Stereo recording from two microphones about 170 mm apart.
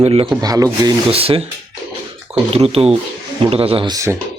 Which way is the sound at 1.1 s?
35° right (ahead or behind).